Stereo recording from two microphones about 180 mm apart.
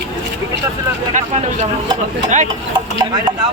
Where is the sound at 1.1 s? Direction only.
40° right (ahead or behind).